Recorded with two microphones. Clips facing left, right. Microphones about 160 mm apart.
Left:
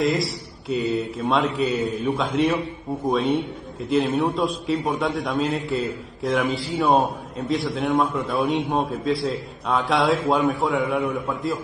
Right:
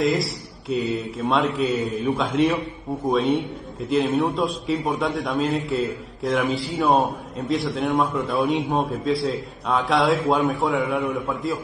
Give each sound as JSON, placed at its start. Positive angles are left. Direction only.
{"t": 0.0, "sound": "a man's voice", "side_deg": 0}